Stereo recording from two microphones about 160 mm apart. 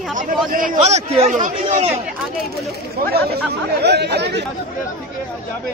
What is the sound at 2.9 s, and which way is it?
Speech, 80° right.